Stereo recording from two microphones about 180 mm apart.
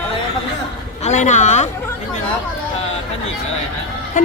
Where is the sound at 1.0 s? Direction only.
40° left (ahead or behind).